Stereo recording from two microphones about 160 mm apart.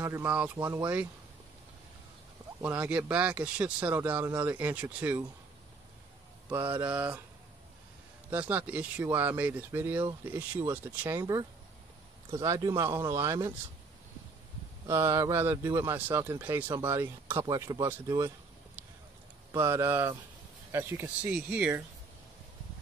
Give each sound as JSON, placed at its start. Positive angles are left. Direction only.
{"t": 0.0, "sound": "speech", "side_deg": -15}
{"t": 2.6, "sound": "speech", "side_deg": -10}
{"t": 6.7, "sound": "speech", "side_deg": -10}
{"t": 8.3, "sound": "speech", "side_deg": -10}
{"t": 14.9, "sound": "speech", "side_deg": -15}
{"t": 19.5, "sound": "speech", "side_deg": -15}